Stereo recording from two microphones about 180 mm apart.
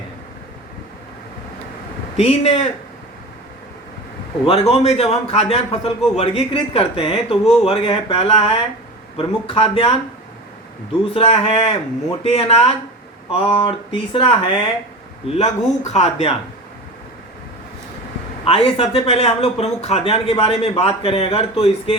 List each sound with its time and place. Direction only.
2.1 s speech: 35° left (ahead or behind)
4.4 s speech: 30° left (ahead or behind)
11.1 s speech: 35° left (ahead or behind)
15.4 s speech: 40° left (ahead or behind)
18.4 s speech: 30° left (ahead or behind)